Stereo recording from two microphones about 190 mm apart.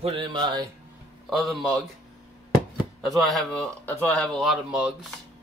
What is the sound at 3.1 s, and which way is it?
Speech, centre (ahead or behind).